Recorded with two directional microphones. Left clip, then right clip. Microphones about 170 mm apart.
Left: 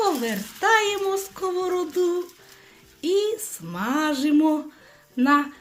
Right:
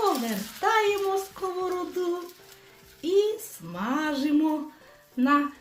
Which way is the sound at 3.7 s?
40° left (ahead or behind).